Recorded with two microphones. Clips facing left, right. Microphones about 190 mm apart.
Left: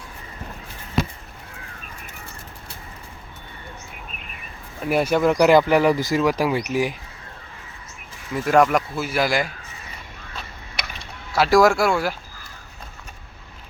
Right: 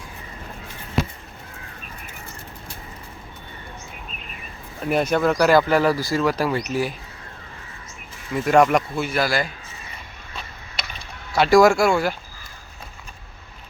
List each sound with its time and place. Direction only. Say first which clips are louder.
4.8 s speech: left 1 dB; 5° left (ahead or behind)
8.3 s speech: right 1 dB; centre (ahead or behind)
9.2 s speech: left 3 dB; 15° left (ahead or behind)
11.3 s speech: right 2 dB; centre (ahead or behind)